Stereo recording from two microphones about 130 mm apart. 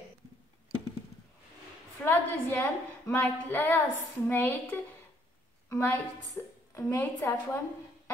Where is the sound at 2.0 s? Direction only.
15° left (ahead or behind).